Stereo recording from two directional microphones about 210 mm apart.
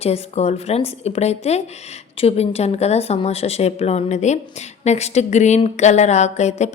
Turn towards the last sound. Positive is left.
turn(degrees=30)  # may be behind; listen again after turning